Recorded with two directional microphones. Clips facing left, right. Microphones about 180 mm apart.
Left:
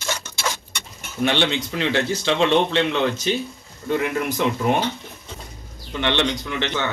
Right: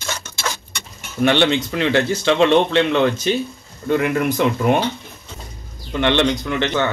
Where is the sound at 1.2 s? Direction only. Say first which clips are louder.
Right 5 dB; 55° right (ahead or behind).